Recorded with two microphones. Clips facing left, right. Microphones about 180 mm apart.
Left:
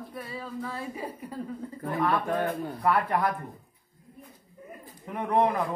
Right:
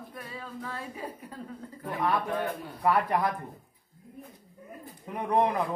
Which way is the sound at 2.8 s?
15° right (ahead or behind).